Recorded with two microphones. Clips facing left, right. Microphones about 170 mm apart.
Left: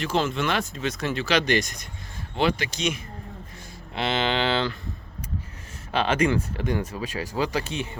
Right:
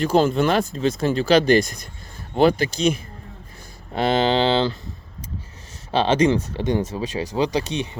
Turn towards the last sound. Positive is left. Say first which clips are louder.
# right 5 dB
turn(degrees=-20)  # may be behind; listen again after turning